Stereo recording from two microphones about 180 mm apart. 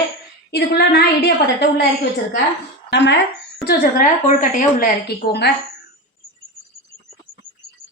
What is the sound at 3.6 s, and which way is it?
A woman's voice, 60° left (ahead or behind).